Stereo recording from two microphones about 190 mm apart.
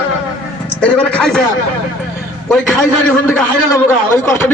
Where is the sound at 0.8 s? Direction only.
5° left (ahead or behind).